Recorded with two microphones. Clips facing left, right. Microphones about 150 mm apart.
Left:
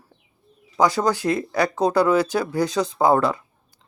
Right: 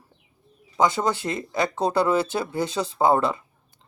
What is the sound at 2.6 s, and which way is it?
Speech, centre (ahead or behind).